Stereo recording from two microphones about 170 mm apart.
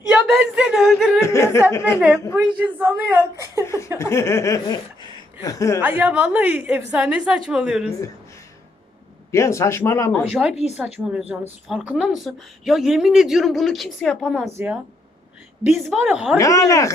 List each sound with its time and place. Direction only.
0.1 s a sound: 5° right (ahead or behind)
1.2 s a sound: 15° left (ahead or behind)
2.3 s a woman's voice: 5° right (ahead or behind)
3.6 s a sound: 15° left (ahead or behind)
3.9 s speech: 15° left (ahead or behind)
5.8 s a woman's voice: 10° right (ahead or behind)
9.3 s speech: 15° left (ahead or behind)
10.5 s a woman's voice: 40° left (ahead or behind)
10.8 s a woman's voice: 5° right (ahead or behind)
15.8 s a woman's voice: 5° right (ahead or behind)
16.4 s speech: 20° left (ahead or behind)